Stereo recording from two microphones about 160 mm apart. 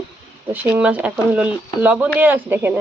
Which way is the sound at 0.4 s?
10° right (ahead or behind).